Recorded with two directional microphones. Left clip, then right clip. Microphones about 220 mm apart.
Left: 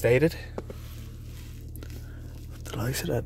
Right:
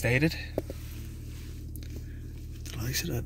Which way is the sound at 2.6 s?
30° left (ahead or behind).